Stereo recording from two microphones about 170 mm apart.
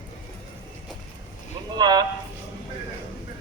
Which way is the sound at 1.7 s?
25° right (ahead or behind).